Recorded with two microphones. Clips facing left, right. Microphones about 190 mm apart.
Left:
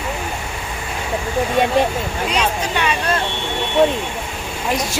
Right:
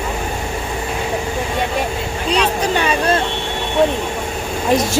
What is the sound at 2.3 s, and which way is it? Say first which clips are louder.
Speech: right 5 dB; 35° right (ahead or behind).